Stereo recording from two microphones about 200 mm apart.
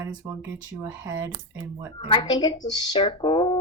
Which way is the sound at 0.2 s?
15° right (ahead or behind).